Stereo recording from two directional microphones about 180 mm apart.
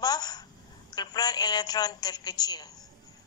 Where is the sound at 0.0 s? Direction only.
20° left (ahead or behind).